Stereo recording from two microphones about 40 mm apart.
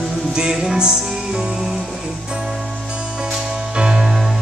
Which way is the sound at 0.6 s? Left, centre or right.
Centre.